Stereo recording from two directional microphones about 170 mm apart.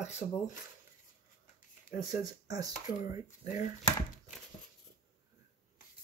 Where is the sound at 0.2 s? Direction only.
30° left (ahead or behind).